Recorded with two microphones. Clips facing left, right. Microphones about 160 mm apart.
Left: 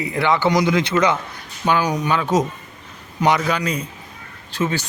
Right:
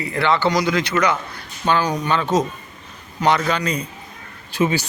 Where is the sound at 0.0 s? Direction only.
15° left (ahead or behind).